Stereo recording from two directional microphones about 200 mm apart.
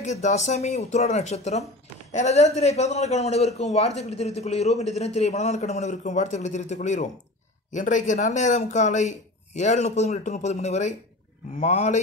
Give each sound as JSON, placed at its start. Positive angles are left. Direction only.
{"t": 0.0, "sound": "a man's voice", "side_deg": 35}